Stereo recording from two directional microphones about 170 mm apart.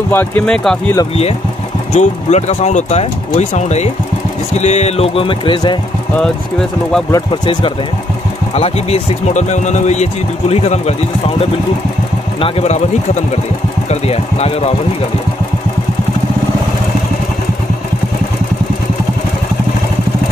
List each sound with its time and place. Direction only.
0.1 s speech: 10° left (ahead or behind)
2.0 s speech: 40° left (ahead or behind)
7.1 s speech: 25° left (ahead or behind)
8.5 s speech: 35° left (ahead or behind)